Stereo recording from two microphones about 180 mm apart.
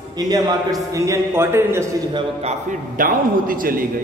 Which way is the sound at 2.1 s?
30° right (ahead or behind).